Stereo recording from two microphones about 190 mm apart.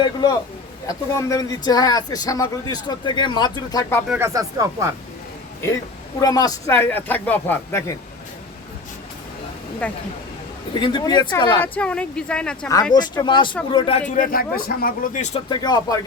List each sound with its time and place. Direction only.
0.0 s a man's voice: 20° left (ahead or behind)
4.1 s speech: 15° right (ahead or behind)
6.1 s speech: 20° left (ahead or behind)
9.8 s speech: 5° left (ahead or behind)
10.8 s a man's voice: 25° left (ahead or behind)
11.6 s speech: 5° left (ahead or behind)
12.9 s a man's voice: 20° left (ahead or behind)
14.2 s speech: 50° left (ahead or behind)
15.4 s a man's voice: 20° left (ahead or behind)